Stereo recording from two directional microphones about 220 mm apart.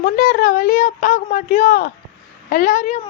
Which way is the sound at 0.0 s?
40° left (ahead or behind).